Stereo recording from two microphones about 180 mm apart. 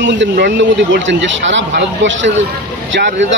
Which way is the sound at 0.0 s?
80° right.